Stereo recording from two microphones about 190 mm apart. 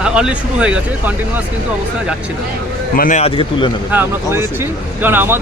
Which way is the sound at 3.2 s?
30° left (ahead or behind).